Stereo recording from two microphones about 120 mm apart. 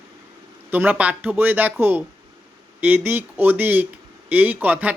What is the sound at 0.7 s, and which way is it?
Speech, 15° right (ahead or behind).